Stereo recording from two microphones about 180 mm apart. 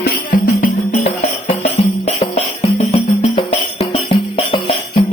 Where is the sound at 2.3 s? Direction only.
35° left (ahead or behind).